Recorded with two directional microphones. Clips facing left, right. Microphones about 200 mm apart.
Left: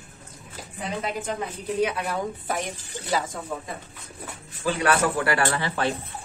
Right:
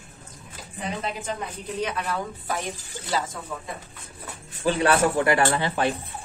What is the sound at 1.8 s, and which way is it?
Speech, 10° left (ahead or behind).